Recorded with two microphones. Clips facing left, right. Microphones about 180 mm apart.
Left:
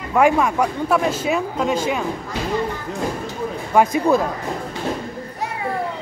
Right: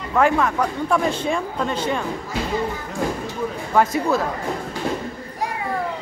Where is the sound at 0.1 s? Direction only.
15° left (ahead or behind).